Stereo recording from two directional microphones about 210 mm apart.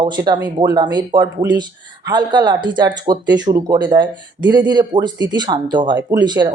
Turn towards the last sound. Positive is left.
turn(degrees=-20)  # may be behind; listen again after turning